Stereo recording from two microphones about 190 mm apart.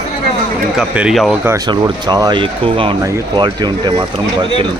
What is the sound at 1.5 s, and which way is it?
Speech, 20° right (ahead or behind).